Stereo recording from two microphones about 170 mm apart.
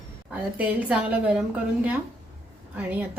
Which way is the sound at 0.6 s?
5° right (ahead or behind).